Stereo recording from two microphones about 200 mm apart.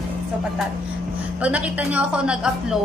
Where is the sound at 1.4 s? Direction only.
5° right (ahead or behind).